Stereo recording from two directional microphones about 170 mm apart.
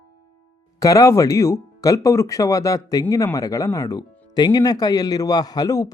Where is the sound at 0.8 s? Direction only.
20° left (ahead or behind).